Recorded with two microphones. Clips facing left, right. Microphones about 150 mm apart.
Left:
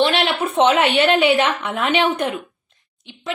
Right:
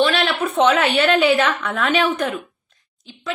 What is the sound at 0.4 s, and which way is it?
A woman's voice, 25° left (ahead or behind).